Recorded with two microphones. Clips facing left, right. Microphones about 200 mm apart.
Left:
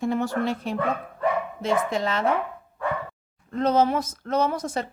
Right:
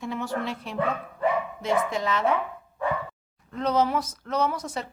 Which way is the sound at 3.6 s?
25° left (ahead or behind).